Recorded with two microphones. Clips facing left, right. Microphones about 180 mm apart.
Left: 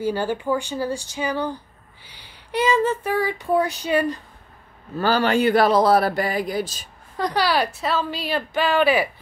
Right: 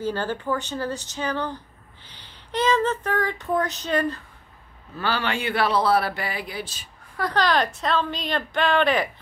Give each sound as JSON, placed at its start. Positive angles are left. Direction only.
{"t": 0.0, "sound": "speech", "side_deg": 10}
{"t": 4.9, "sound": "speech", "side_deg": 40}
{"t": 7.2, "sound": "speech", "side_deg": 15}